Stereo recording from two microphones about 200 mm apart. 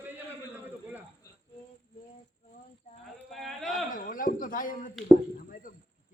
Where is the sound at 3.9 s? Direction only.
40° left (ahead or behind).